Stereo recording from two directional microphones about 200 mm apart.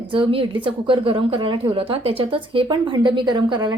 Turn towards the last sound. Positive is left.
turn(degrees=-20)  # may be behind; listen again after turning